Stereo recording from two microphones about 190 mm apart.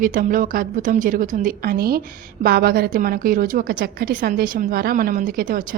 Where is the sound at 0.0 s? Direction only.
45° right (ahead or behind).